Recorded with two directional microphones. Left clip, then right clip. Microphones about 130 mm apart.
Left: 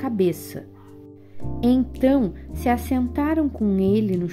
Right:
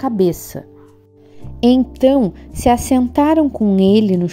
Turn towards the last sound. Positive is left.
turn(degrees=-65)  # may be behind; listen again after turning